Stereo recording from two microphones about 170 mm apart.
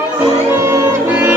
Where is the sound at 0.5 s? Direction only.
15° right (ahead or behind).